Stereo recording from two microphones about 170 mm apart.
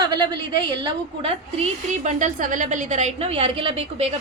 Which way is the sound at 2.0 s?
50° right (ahead or behind).